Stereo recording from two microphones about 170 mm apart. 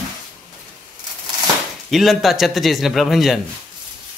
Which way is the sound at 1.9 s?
Centre (ahead or behind).